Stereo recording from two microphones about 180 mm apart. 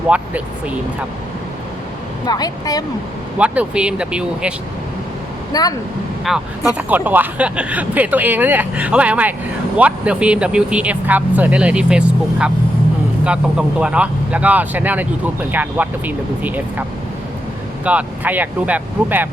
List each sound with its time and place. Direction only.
2.2 s speech: 20° left (ahead or behind)
3.3 s speech: 5° right (ahead or behind)
5.5 s speech: 20° left (ahead or behind)
6.2 s speech: centre (ahead or behind)
17.8 s speech: 10° right (ahead or behind)